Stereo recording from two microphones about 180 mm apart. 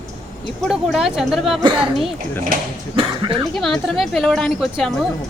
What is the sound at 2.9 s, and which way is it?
Speech, 30° right (ahead or behind).